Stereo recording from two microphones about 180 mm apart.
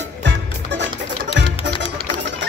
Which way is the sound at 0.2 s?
80° right.